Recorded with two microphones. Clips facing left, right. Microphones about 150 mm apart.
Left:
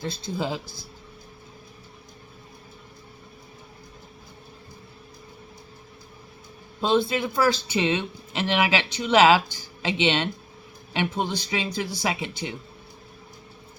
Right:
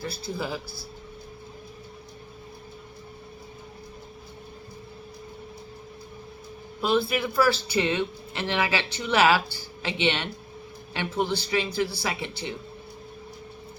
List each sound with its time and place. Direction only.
0.3 s speech: 20° left (ahead or behind)
6.8 s speech: 25° left (ahead or behind)